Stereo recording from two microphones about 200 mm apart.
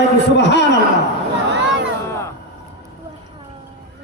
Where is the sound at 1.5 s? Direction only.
60° right (ahead or behind).